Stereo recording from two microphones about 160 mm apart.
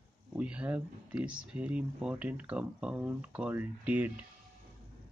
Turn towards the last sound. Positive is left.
turn(degrees=-10)  # may be behind; listen again after turning